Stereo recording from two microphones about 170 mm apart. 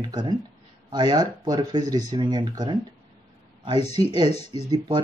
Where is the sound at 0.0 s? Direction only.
25° right (ahead or behind).